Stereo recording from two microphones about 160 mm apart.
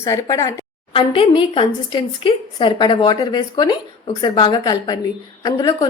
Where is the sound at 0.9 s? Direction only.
30° left (ahead or behind).